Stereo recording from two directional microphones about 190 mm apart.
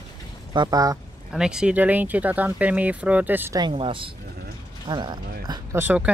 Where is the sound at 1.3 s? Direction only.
5° right (ahead or behind).